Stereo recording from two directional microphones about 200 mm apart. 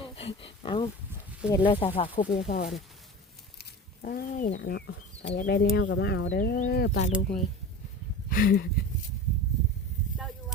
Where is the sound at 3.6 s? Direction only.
45° left (ahead or behind).